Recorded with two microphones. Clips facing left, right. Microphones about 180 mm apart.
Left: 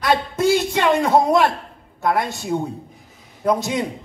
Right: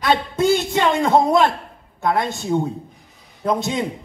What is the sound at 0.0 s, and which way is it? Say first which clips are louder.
A man's voice: even; 25° right (ahead or behind).